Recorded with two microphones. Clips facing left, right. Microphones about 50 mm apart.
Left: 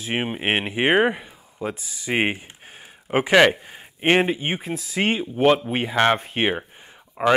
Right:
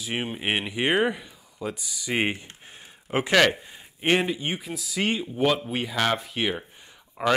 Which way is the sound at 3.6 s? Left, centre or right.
Left.